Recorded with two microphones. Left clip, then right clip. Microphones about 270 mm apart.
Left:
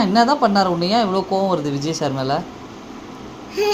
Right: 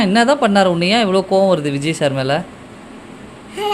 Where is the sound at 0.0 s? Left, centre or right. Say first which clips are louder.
Right 2 dB; right.